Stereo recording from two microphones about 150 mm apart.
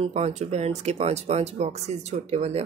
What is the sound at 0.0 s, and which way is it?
Speech, 45° right (ahead or behind).